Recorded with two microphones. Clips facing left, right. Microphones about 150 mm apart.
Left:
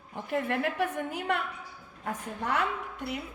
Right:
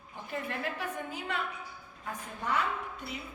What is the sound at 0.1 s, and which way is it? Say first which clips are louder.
A woman's voice: left 7 dB; 65° left (ahead or behind).